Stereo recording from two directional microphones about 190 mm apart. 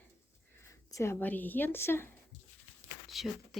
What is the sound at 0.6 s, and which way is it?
Speech, 15° left (ahead or behind).